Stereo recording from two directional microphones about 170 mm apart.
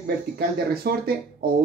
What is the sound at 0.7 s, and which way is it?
Speech, 65° right (ahead or behind).